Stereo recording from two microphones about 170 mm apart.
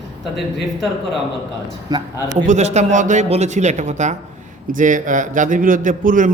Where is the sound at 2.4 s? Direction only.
40° right (ahead or behind).